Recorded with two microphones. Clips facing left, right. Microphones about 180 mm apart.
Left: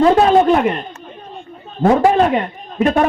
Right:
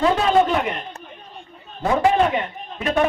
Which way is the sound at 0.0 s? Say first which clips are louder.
Left 6 dB; 50° left (ahead or behind).